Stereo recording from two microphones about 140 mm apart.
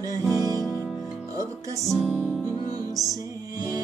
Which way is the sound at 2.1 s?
10° left (ahead or behind).